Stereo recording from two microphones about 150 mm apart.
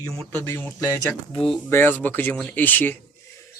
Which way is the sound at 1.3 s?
35° left (ahead or behind).